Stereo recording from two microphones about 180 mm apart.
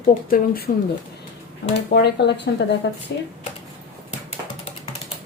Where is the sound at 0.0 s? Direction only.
50° left (ahead or behind).